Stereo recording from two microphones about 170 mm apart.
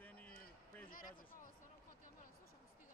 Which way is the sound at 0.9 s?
55° left (ahead or behind).